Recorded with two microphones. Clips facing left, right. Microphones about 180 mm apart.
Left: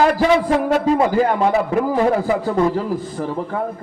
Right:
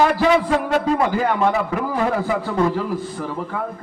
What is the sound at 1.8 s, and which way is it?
A man's voice, 35° left (ahead or behind).